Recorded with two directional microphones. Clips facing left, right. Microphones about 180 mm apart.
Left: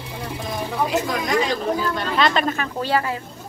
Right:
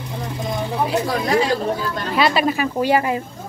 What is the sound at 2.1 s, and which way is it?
Speech, 5° right (ahead or behind).